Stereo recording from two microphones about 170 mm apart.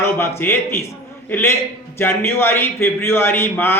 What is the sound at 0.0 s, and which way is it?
A man's voice, 15° left (ahead or behind).